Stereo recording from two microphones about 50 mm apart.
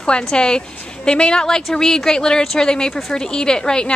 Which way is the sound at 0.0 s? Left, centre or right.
Centre.